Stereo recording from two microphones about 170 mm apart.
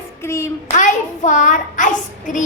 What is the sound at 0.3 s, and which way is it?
Child singing, 15° left (ahead or behind).